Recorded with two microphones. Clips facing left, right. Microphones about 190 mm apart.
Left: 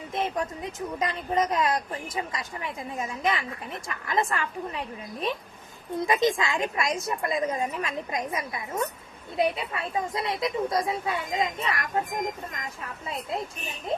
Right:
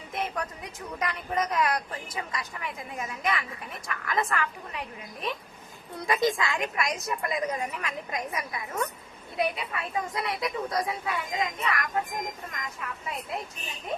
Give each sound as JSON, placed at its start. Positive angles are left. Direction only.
{"t": 0.1, "sound": "speech", "side_deg": 25}
{"t": 6.1, "sound": "speech", "side_deg": 20}